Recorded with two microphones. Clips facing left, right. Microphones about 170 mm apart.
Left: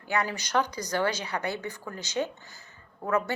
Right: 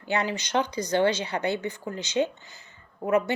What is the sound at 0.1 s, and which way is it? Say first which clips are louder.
Speech: right 2 dB; 25° right (ahead or behind).